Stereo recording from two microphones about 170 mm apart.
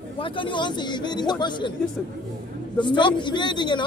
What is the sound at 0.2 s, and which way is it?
Speech, 30° left (ahead or behind).